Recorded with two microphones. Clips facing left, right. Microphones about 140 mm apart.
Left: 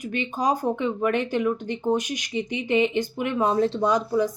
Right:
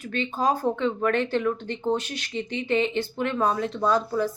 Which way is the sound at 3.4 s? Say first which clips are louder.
Left 4 dB; 25° left (ahead or behind).